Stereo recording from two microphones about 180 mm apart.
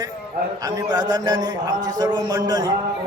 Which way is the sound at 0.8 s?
20° right (ahead or behind).